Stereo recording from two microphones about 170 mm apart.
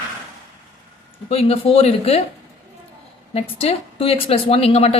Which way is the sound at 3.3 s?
35° left (ahead or behind).